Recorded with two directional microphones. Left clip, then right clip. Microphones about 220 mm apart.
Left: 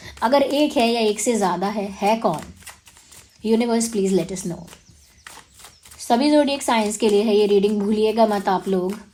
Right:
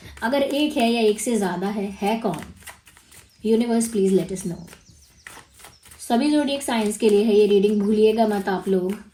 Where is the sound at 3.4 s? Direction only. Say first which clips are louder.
Left 1 dB; 30° left (ahead or behind).